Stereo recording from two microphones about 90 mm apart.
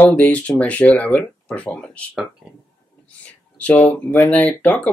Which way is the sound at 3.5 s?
15° left (ahead or behind).